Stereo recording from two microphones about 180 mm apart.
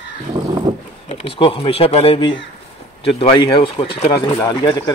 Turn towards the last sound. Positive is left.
turn(degrees=25)  # may be behind; listen again after turning